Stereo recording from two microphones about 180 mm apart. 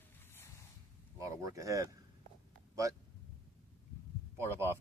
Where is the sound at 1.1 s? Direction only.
15° right (ahead or behind).